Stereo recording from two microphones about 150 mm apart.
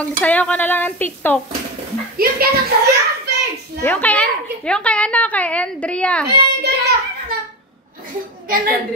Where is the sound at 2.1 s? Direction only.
80° right.